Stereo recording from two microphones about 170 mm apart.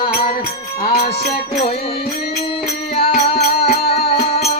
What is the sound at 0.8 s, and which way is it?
Music, 60° left (ahead or behind).